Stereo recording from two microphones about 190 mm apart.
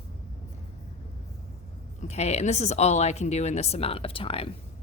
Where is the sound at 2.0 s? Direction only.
35° left (ahead or behind).